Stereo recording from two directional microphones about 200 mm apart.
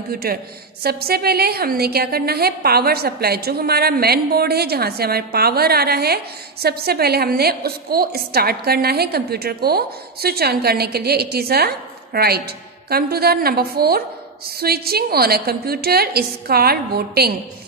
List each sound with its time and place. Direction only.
0.1 s a woman's voice: 50° right (ahead or behind)